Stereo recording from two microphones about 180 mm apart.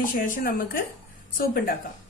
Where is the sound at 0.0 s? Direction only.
45° left (ahead or behind).